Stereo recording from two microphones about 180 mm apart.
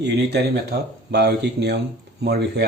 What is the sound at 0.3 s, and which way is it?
Speech, 65° right (ahead or behind).